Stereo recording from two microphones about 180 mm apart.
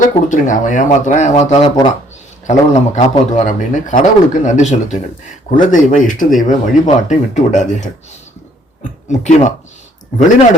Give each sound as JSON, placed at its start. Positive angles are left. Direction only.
{"t": 0.0, "sound": "a man's voice", "side_deg": 45}